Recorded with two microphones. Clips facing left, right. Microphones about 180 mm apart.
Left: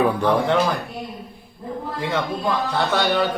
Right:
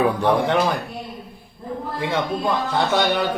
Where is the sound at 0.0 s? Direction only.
15° right (ahead or behind).